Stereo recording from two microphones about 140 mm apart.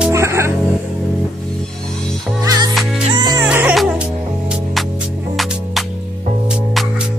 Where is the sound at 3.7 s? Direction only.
Centre (ahead or behind).